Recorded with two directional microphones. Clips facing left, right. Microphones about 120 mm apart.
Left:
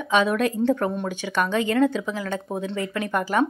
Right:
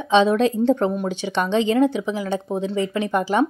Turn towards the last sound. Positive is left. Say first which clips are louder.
# right 3 dB
turn(degrees=-20)  # may be behind; listen again after turning